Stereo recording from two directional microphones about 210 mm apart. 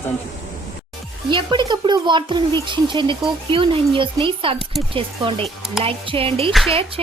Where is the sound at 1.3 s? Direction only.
20° right (ahead or behind).